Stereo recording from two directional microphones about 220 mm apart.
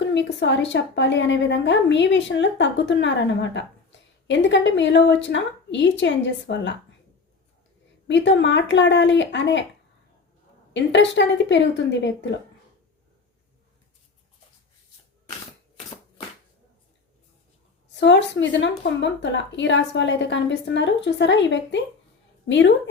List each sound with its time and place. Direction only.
0.1 s a woman's voice: 55° left (ahead or behind)
8.0 s a woman's voice: 55° left (ahead or behind)
10.8 s a woman's voice: 55° left (ahead or behind)
18.0 s a woman's voice: 55° left (ahead or behind)